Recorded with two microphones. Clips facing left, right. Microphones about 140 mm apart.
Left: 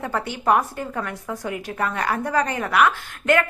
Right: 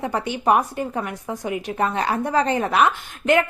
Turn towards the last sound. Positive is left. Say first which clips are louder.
# right 1 dB
turn(degrees=-20)  # may be behind; listen again after turning